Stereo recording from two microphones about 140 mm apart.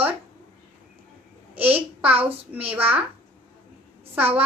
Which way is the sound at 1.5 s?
10° right (ahead or behind).